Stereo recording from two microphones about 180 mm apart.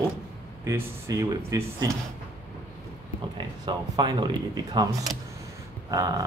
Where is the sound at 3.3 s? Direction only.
25° right (ahead or behind).